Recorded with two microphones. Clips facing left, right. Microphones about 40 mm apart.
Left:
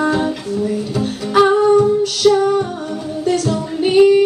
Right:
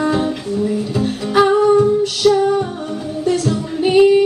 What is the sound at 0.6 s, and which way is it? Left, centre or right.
Music, centre.